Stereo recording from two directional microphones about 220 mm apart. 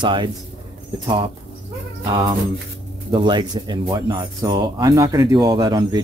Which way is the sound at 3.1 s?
20° right (ahead or behind).